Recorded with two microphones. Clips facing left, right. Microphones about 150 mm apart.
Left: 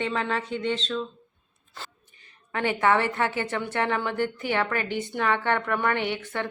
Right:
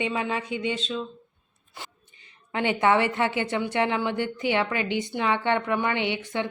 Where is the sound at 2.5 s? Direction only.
20° right (ahead or behind).